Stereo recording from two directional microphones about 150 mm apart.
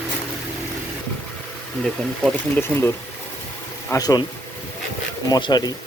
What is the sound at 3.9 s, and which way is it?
Speech, 25° left (ahead or behind).